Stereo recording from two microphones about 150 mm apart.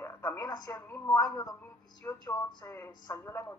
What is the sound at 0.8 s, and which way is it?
A woman's voice, 15° left (ahead or behind).